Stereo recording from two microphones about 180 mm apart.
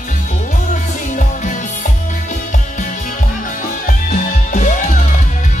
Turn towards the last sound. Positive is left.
turn(degrees=45)  # may be behind; listen again after turning